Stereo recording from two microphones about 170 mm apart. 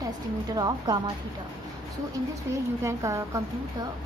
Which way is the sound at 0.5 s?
25° right (ahead or behind).